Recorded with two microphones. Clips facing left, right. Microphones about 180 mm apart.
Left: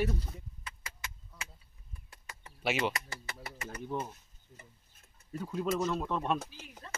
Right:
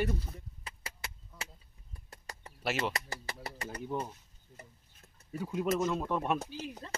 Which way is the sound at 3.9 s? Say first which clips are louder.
Even; 5° right (ahead or behind).